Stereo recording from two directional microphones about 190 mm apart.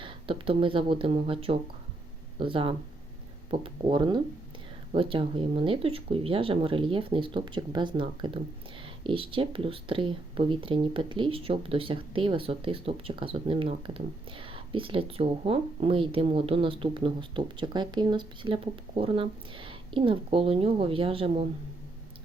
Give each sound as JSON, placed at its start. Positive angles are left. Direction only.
{"t": 0.0, "sound": "speech", "side_deg": -25}